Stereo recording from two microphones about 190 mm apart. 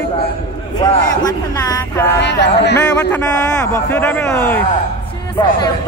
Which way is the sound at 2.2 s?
65° left (ahead or behind).